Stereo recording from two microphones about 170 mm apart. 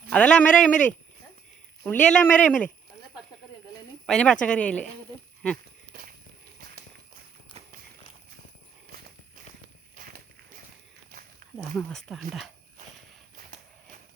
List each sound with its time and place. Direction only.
0.1 s speech: 5° left (ahead or behind)
1.8 s speech: 5° left (ahead or behind)
4.0 s speech: 5° left (ahead or behind)
5.9 s a sound: 55° right (ahead or behind)
9.9 s walk: 55° right (ahead or behind)
11.5 s speech: 5° left (ahead or behind)